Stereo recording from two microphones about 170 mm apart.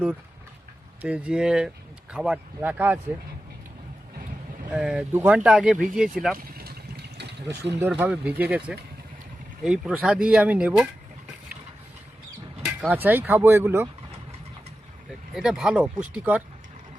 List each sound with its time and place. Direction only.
1.0 s speech: 5° right (ahead or behind)
4.7 s speech: 5° right (ahead or behind)
6.3 s a sound: 65° right (ahead or behind); by 7.7 s 80° right
7.9 s speech: 5° right (ahead or behind)
12.6 s speech: 10° right (ahead or behind)
15.4 s speech: 5° right (ahead or behind)